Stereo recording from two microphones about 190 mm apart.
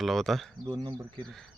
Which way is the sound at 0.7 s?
20° right (ahead or behind).